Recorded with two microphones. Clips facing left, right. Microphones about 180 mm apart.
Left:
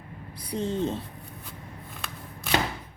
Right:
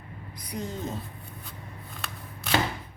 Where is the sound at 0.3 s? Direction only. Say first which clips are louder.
Left 6 dB; 30° left (ahead or behind).